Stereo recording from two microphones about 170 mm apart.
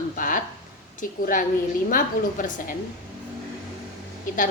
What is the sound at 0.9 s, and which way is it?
A woman's voice, 50° left (ahead or behind).